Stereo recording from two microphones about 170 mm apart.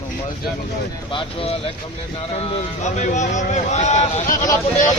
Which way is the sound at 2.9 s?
45° left (ahead or behind).